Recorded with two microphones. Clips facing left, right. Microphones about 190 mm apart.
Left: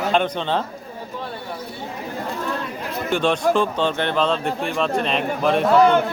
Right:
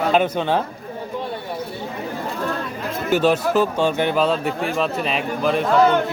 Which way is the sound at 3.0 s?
5° right (ahead or behind).